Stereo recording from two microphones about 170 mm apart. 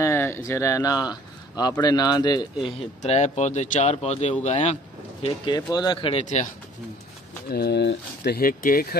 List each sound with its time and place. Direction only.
0.0 s speech: 15° left (ahead or behind)
3.0 s speech: 40° left (ahead or behind)
5.2 s speech: 25° left (ahead or behind)
6.2 s speech: 45° left (ahead or behind)
7.5 s speech: 75° left (ahead or behind); by 8.8 s 55° left (ahead or behind)